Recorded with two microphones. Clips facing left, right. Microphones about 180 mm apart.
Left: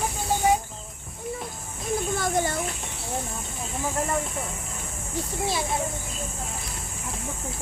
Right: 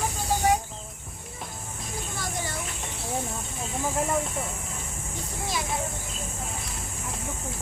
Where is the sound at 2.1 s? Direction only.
55° left (ahead or behind).